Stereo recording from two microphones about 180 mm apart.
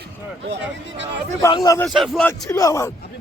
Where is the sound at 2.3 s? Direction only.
15° left (ahead or behind).